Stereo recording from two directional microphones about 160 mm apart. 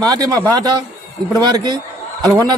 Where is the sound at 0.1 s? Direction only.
20° right (ahead or behind).